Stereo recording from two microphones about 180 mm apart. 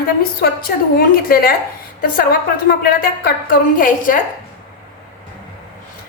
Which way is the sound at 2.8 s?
55° left (ahead or behind).